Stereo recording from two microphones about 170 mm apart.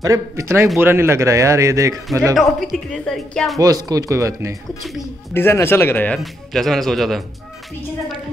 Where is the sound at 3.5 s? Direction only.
20° right (ahead or behind).